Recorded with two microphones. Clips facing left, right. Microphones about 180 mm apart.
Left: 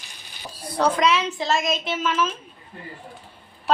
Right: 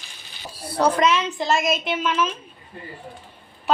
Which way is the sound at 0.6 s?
10° right (ahead or behind).